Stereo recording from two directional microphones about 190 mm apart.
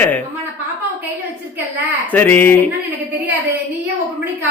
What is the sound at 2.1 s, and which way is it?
Speech, 10° left (ahead or behind).